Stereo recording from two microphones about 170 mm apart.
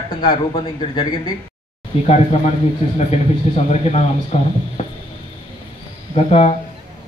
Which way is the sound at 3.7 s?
40° left (ahead or behind).